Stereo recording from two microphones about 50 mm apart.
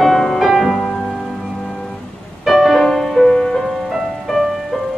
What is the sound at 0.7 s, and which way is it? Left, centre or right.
Music, centre.